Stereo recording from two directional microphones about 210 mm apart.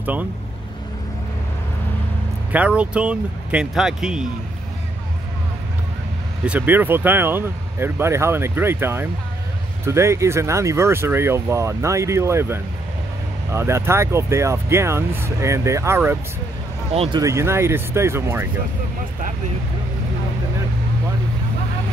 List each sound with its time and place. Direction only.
0.0 s speech: 10° right (ahead or behind)
2.5 s speech: 5° right (ahead or behind)
6.4 s speech: 5° right (ahead or behind)
16.9 s speech: 30° right (ahead or behind)
17.2 s speech: 15° right (ahead or behind)